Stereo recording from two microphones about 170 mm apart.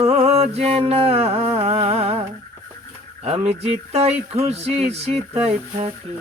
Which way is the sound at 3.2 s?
35° right (ahead or behind).